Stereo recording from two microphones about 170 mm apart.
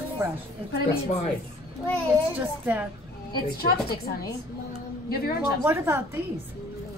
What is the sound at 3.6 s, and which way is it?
A woman's voice, 65° left (ahead or behind).